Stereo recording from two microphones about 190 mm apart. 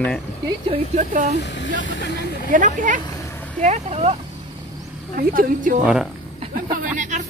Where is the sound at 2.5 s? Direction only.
45° right (ahead or behind).